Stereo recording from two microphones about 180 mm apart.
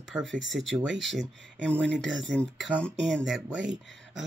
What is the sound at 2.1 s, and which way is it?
Speech, 90° right.